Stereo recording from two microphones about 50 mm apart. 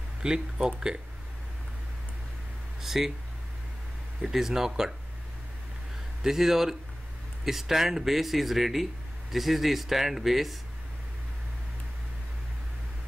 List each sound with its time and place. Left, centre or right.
0.2 s speech: centre
2.8 s speech: centre
4.2 s speech: centre
6.2 s speech: centre